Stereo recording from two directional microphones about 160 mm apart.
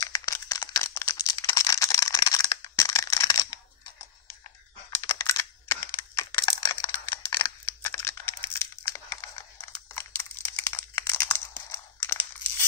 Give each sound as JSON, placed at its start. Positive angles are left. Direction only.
{"t": 0.0, "sound": "crumpling", "side_deg": 20}
{"t": 5.0, "sound": "computer keyboard", "side_deg": 20}
{"t": 7.6, "sound": "crumpling", "side_deg": 15}